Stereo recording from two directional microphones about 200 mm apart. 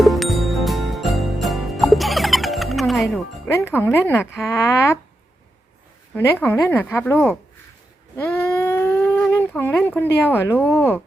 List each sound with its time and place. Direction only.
0.0 s music: centre (ahead or behind)
3.5 s a woman's voice: 10° left (ahead or behind)
6.1 s a woman's voice: 10° left (ahead or behind)
8.1 s a sound: 10° left (ahead or behind)
10.2 s a woman's voice: 10° left (ahead or behind)